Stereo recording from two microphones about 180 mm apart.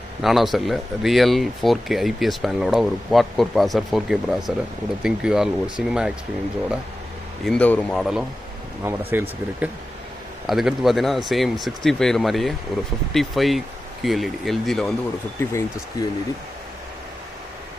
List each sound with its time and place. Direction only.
0.2 s speech: centre (ahead or behind)
7.4 s speech: 5° left (ahead or behind)
8.8 s speech: 10° right (ahead or behind)
16.0 s speech: 20° left (ahead or behind)